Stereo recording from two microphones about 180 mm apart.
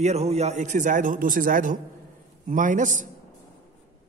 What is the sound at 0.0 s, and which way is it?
A man's voice, 35° right (ahead or behind).